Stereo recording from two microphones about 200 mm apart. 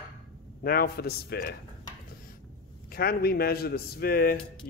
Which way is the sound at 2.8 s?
50° left (ahead or behind).